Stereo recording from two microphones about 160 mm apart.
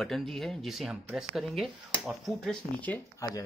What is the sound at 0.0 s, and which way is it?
Speech, centre (ahead or behind).